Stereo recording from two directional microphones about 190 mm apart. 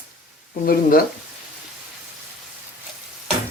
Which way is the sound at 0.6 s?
50° left (ahead or behind).